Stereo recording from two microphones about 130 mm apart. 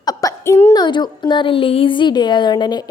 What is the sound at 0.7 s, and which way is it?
A woman's voice, 35° left (ahead or behind).